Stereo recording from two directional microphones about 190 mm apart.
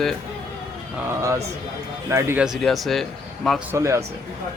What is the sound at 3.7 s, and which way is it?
Speech, 15° right (ahead or behind).